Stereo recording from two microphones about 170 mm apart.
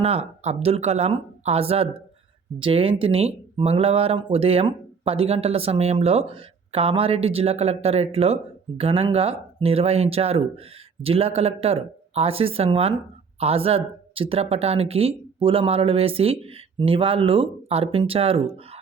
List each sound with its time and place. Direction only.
0.0 s speech: 35° right (ahead or behind)